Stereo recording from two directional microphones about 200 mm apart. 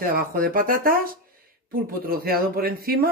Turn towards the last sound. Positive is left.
turn(degrees=-50)  # may be behind; listen again after turning